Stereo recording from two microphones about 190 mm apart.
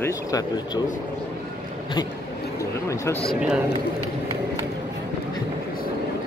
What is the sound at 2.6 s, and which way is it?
Speech, 15° left (ahead or behind).